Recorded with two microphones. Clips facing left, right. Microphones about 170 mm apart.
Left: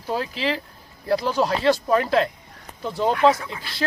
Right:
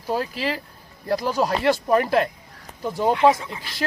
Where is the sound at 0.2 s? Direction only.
45° right (ahead or behind).